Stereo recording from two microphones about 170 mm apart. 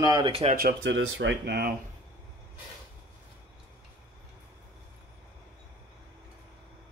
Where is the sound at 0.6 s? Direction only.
75° right (ahead or behind).